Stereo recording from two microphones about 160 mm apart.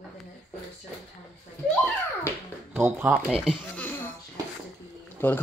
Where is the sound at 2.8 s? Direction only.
15° right (ahead or behind).